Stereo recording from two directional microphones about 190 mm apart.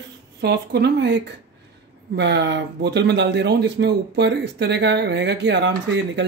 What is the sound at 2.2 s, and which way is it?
Speech, 65° right (ahead or behind).